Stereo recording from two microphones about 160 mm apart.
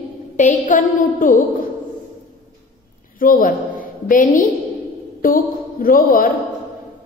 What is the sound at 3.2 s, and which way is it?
A woman's voice, 60° left (ahead or behind).